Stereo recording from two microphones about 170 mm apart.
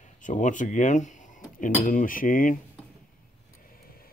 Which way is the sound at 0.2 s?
45° left (ahead or behind).